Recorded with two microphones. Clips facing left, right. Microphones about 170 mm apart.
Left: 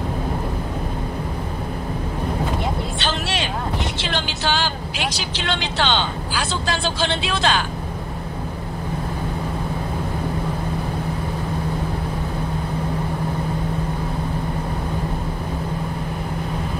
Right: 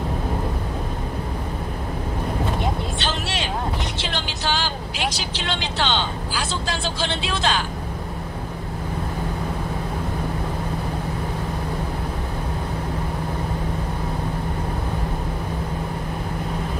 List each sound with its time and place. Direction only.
3.0 s vehicle: 70° left (ahead or behind)